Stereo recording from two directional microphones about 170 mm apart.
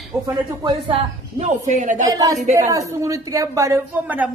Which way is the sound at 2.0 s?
20° right (ahead or behind).